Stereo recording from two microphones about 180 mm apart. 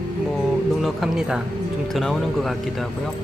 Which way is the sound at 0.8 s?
Centre (ahead or behind).